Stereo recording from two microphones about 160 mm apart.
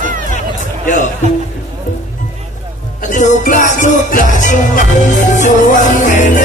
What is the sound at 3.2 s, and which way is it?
Music, 50° left (ahead or behind).